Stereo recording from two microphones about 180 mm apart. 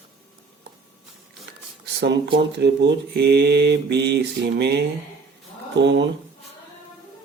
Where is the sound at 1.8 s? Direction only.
70° right (ahead or behind).